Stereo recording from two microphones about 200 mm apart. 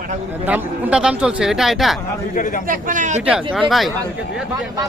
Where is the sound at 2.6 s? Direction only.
40° right (ahead or behind).